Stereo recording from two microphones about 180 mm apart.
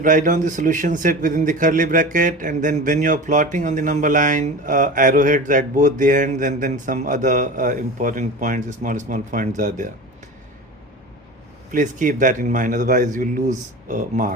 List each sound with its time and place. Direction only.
0.0 s a man's voice: 45° right (ahead or behind)
11.7 s a man's voice: 45° right (ahead or behind)